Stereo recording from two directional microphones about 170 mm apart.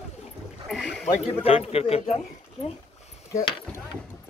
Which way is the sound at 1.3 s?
35° left (ahead or behind).